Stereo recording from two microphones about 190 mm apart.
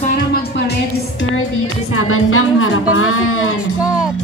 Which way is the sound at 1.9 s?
90° left.